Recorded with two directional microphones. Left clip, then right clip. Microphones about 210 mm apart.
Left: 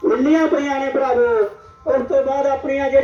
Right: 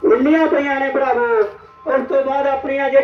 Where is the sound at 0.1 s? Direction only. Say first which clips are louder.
Right 1 dB; 50° left (ahead or behind).